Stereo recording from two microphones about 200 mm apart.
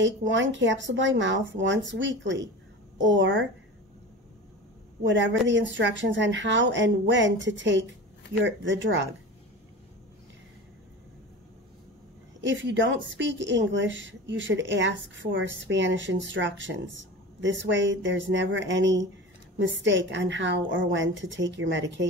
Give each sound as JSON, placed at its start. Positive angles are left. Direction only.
{"t": 0.0, "sound": "a woman's voice", "side_deg": -65}
{"t": 5.0, "sound": "a woman's voice", "side_deg": -65}
{"t": 12.4, "sound": "a woman's voice", "side_deg": -65}